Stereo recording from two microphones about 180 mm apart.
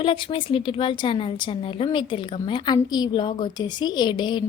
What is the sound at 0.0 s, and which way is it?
A woman's voice, 30° left (ahead or behind).